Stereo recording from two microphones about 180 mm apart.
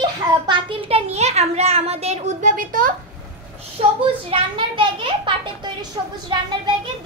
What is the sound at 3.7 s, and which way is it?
A child's voice, 30° right (ahead or behind).